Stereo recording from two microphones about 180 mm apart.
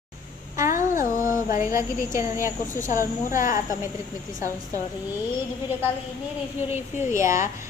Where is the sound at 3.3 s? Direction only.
50° left (ahead or behind).